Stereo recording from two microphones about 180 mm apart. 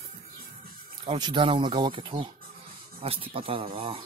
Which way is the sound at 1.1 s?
25° right (ahead or behind).